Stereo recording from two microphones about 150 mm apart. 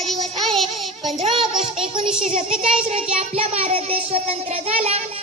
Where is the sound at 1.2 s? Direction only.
40° right (ahead or behind).